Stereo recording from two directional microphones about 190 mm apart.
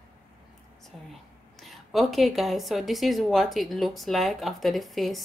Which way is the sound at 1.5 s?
Centre (ahead or behind).